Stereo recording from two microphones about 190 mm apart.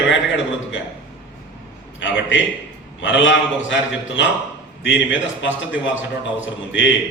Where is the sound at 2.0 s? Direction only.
75° left (ahead or behind).